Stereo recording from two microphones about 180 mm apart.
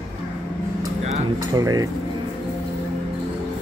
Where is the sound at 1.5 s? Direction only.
20° right (ahead or behind).